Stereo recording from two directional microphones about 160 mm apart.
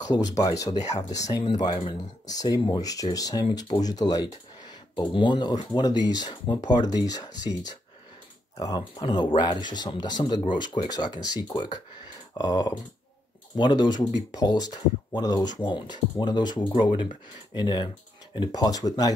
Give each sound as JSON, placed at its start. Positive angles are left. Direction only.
{"t": 0.4, "sound": "speech", "side_deg": 25}
{"t": 0.7, "sound": "speech", "side_deg": 45}
{"t": 1.2, "sound": "speech", "side_deg": 25}
{"t": 8.5, "sound": "speech", "side_deg": 25}